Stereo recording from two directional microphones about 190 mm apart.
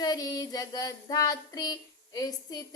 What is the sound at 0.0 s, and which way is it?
Female singing, 20° left (ahead or behind).